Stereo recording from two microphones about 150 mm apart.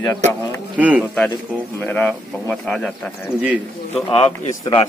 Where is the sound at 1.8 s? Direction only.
10° left (ahead or behind).